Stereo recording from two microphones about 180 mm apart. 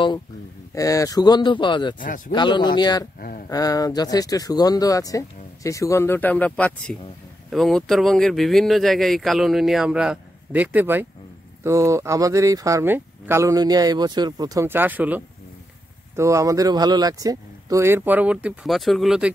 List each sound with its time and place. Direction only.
0.7 s speech: 20° left (ahead or behind)
2.0 s speech: 50° left (ahead or behind)
2.3 s speech: 25° left (ahead or behind)
3.2 s speech: 50° left (ahead or behind)
3.4 s speech: 20° left (ahead or behind); by 19.3 s 5° right (ahead or behind)